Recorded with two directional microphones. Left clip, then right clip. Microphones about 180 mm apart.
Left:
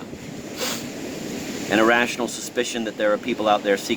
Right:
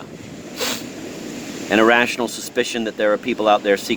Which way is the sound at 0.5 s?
45° right (ahead or behind).